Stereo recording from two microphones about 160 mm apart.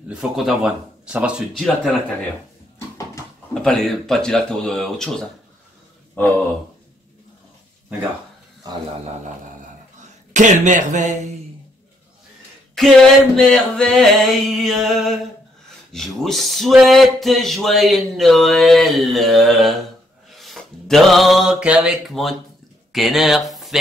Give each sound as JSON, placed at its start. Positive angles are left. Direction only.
{"t": 0.1, "sound": "speech", "side_deg": -5}
{"t": 3.6, "sound": "speech", "side_deg": 5}
{"t": 6.1, "sound": "a sound", "side_deg": 10}
{"t": 10.3, "sound": "speech", "side_deg": -50}
{"t": 12.7, "sound": "speech", "side_deg": 0}
{"t": 20.2, "sound": "a sound", "side_deg": 0}
{"t": 22.9, "sound": "speech", "side_deg": 0}